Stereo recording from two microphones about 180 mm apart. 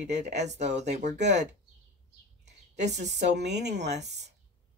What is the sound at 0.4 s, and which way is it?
Speech, 40° right (ahead or behind).